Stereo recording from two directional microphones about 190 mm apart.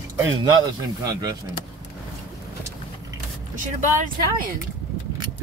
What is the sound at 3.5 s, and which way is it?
Speech, 45° right (ahead or behind).